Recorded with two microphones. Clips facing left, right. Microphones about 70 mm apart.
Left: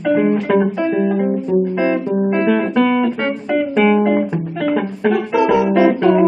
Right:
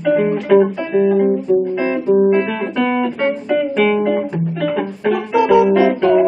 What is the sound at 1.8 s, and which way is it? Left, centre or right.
Guitar, centre.